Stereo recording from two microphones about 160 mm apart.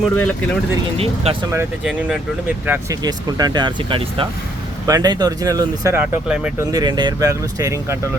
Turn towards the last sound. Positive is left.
turn(degrees=-20)  # may be behind; listen again after turning